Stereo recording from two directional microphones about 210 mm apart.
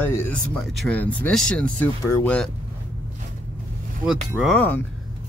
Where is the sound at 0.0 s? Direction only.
10° left (ahead or behind).